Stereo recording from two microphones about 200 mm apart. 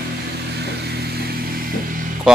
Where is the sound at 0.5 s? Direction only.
55° right (ahead or behind).